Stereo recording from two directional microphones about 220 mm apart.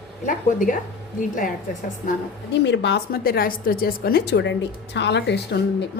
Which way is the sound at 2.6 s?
55° left (ahead or behind).